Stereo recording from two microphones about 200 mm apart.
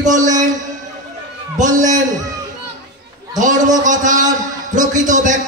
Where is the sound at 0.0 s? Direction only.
40° right (ahead or behind).